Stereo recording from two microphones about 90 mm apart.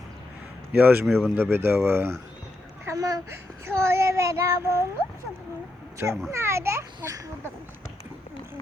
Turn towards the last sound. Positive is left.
turn(degrees=-35)  # may be behind; listen again after turning